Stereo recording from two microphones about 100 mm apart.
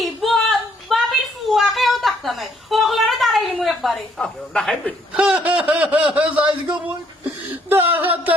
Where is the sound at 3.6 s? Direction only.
Centre (ahead or behind).